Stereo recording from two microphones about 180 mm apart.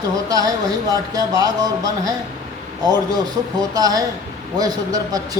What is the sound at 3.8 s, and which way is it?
Speech, 20° right (ahead or behind).